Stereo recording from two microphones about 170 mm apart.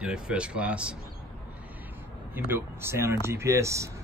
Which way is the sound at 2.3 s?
15° right (ahead or behind).